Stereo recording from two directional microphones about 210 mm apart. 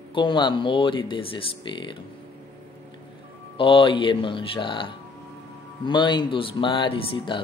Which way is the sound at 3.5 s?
25° left (ahead or behind).